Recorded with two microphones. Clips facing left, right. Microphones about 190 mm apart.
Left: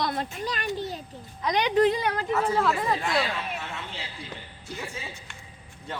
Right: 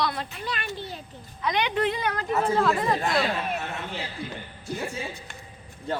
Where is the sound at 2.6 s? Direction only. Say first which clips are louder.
Right 2 dB; 5° left (ahead or behind).